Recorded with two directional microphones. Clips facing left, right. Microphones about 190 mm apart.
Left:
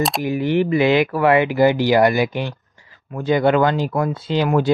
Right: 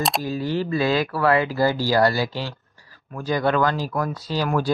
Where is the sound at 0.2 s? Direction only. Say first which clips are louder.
Left 6 dB; 20° left (ahead or behind).